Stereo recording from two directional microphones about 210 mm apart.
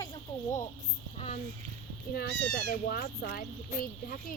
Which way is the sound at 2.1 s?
45° left (ahead or behind).